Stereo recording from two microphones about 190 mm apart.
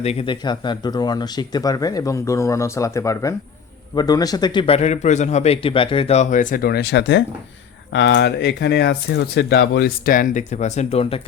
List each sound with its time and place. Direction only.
0.0 s a man's voice: 30° left (ahead or behind)